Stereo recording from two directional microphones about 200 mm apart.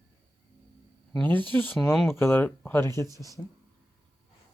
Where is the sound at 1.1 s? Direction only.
10° left (ahead or behind).